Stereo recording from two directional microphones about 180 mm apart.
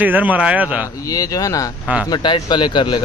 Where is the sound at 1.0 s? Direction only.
20° left (ahead or behind).